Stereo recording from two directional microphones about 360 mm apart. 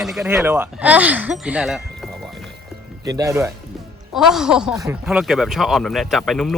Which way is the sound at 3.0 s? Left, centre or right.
Centre.